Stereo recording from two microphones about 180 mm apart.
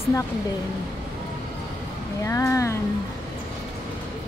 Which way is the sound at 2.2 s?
15° left (ahead or behind).